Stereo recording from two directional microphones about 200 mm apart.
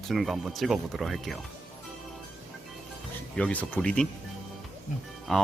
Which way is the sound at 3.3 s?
5° left (ahead or behind).